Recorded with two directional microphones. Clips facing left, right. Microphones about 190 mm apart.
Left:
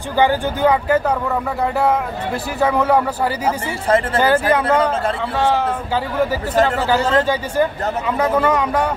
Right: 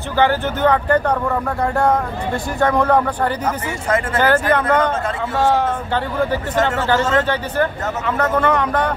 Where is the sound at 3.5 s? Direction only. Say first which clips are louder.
Left 3 dB; 30° left (ahead or behind).